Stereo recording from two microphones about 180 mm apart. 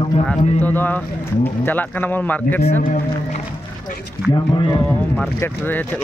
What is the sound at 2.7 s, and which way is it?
Speech, 40° left (ahead or behind).